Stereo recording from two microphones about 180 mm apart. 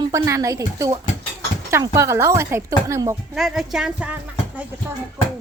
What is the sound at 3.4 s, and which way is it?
Speech, centre (ahead or behind).